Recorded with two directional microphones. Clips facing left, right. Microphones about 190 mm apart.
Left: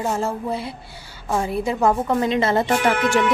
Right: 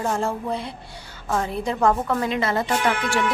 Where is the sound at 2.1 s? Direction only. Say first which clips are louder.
Left 4 dB; 25° left (ahead or behind).